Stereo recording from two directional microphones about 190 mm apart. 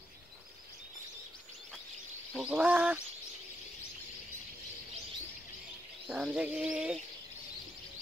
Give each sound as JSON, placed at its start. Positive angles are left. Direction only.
{"t": 2.3, "sound": "speech", "side_deg": -5}
{"t": 6.0, "sound": "bird", "side_deg": -5}